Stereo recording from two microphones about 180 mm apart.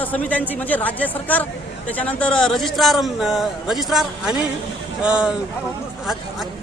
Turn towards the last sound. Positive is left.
turn(degrees=-5)  # may be behind; listen again after turning